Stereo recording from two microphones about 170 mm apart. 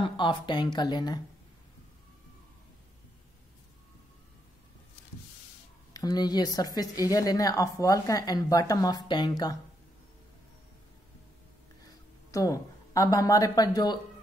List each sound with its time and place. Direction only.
0.0 s a woman's voice: 30° left (ahead or behind)
5.9 s a woman's voice: 25° left (ahead or behind)
11.8 s a woman's voice: 20° left (ahead or behind)